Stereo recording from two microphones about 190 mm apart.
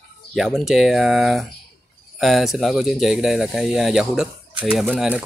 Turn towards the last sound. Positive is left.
turn(degrees=0)  # may be behind; listen again after turning